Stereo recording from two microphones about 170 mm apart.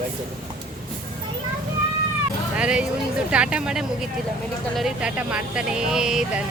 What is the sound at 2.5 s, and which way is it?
Music, 5° right (ahead or behind).